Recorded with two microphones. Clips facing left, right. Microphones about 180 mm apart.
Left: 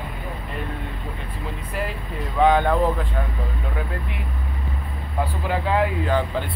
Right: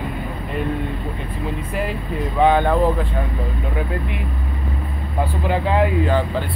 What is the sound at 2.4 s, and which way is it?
Speech, 5° right (ahead or behind).